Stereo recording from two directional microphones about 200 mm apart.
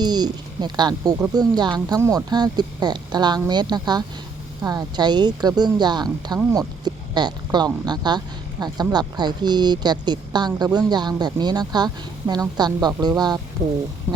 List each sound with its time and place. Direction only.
0.0 s speech: 20° right (ahead or behind)